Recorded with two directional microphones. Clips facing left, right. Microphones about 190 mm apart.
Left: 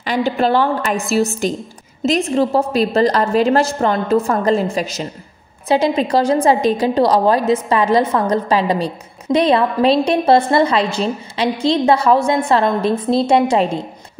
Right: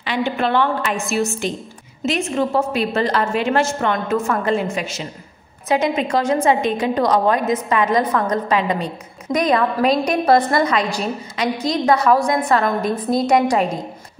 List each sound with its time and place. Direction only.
0.0 s a woman's voice: 40° left (ahead or behind)